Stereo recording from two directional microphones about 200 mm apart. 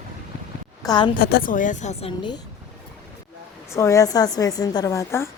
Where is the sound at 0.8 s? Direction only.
20° left (ahead or behind).